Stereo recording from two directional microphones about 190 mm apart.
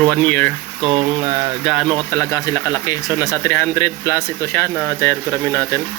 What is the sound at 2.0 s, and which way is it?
Speech, 15° left (ahead or behind).